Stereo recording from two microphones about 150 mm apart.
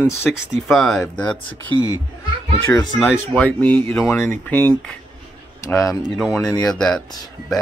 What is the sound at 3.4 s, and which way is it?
Speech, 10° left (ahead or behind).